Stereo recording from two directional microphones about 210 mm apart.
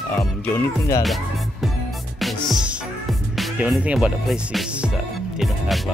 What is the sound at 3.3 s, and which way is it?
Speech, centre (ahead or behind).